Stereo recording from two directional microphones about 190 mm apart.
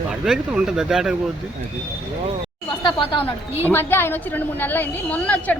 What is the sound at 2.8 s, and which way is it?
Speech, 25° left (ahead or behind).